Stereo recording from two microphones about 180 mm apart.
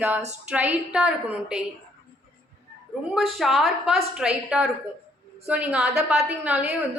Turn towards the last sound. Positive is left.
turn(degrees=-5)  # may be behind; listen again after turning